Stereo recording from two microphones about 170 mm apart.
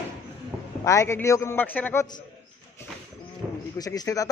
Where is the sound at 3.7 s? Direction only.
20° left (ahead or behind).